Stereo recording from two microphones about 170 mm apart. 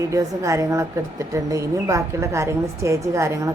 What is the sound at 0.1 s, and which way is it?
A woman's voice, 20° right (ahead or behind).